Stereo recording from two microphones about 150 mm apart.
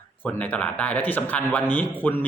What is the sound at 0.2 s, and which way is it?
A man's voice, 10° left (ahead or behind).